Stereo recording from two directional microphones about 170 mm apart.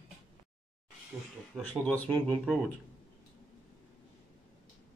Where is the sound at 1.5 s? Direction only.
5° left (ahead or behind).